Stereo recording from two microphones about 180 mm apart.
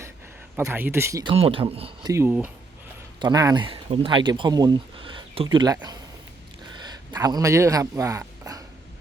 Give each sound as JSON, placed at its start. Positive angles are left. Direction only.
{"t": 0.5, "sound": "speech", "side_deg": -10}
{"t": 1.2, "sound": "speech", "side_deg": -30}
{"t": 2.0, "sound": "speech", "side_deg": -15}
{"t": 6.8, "sound": "speech", "side_deg": -20}